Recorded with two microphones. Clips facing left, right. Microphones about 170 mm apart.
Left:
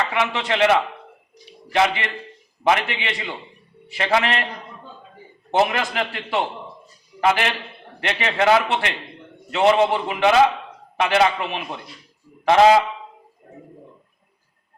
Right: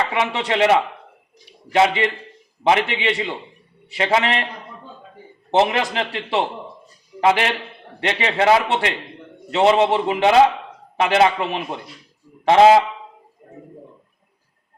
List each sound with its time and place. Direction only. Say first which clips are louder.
0.1 s a man's voice: right 1 dB; 25° right (ahead or behind)
5.5 s a man's voice: right 2 dB; 25° right (ahead or behind)